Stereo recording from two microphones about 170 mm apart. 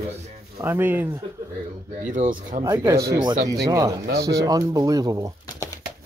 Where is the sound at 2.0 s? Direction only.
50° right (ahead or behind).